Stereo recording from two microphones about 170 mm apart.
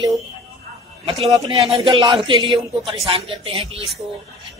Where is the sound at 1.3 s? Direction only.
25° right (ahead or behind).